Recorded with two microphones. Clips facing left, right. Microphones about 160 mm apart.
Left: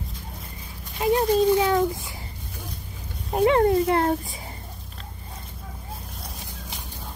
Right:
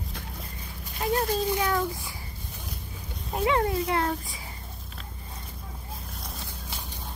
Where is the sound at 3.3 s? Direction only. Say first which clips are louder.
Left 7 dB; 40° left (ahead or behind).